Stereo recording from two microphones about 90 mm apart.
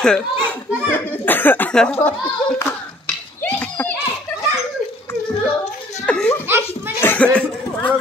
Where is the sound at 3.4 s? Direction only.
20° left (ahead or behind).